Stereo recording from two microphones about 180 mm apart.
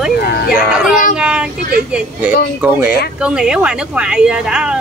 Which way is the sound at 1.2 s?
5° right (ahead or behind).